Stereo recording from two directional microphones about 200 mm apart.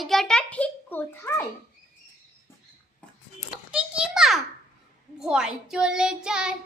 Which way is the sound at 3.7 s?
5° right (ahead or behind).